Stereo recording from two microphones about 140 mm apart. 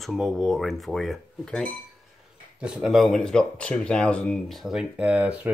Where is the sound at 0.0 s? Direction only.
Centre (ahead or behind).